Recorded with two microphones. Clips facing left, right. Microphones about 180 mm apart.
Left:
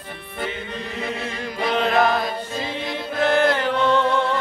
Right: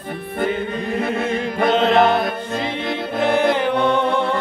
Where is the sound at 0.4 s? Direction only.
50° right (ahead or behind).